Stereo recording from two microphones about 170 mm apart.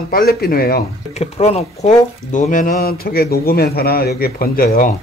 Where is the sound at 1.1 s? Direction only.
40° left (ahead or behind); by 4.9 s 60° left (ahead or behind).